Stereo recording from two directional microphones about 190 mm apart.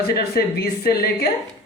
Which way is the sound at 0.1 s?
55° left (ahead or behind).